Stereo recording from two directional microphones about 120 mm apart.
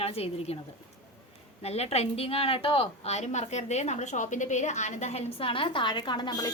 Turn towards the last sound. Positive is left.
turn(degrees=35)  # may be behind; listen again after turning